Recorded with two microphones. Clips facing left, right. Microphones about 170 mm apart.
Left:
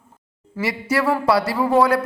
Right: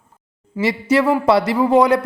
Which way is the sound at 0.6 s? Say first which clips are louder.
Right 5 dB; 20° right (ahead or behind).